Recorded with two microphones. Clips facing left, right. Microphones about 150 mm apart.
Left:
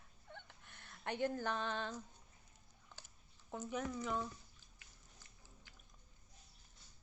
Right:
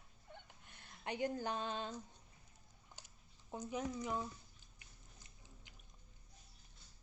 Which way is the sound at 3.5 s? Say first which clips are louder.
Even; 15° right (ahead or behind).